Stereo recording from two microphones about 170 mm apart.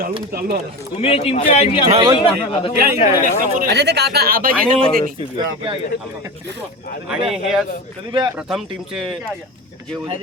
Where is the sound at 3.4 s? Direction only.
55° right (ahead or behind).